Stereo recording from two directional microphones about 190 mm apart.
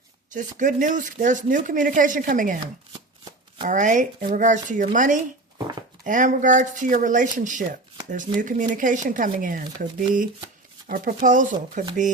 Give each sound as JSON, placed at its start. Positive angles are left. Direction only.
{"t": 0.3, "sound": "speech", "side_deg": -40}
{"t": 3.7, "sound": "speech", "side_deg": -40}